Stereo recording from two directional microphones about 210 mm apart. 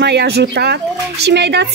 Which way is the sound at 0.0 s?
50° right (ahead or behind).